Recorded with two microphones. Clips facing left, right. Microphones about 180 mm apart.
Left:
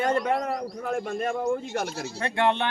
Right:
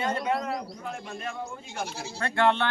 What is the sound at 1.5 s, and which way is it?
Speech, 70° left (ahead or behind).